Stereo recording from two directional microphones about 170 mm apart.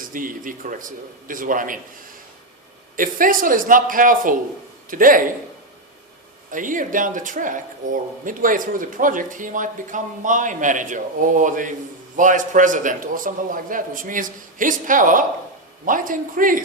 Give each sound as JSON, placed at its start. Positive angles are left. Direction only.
{"t": 0.0, "sound": "speech", "side_deg": -55}
{"t": 2.9, "sound": "speech", "side_deg": -55}
{"t": 6.5, "sound": "speech", "side_deg": -50}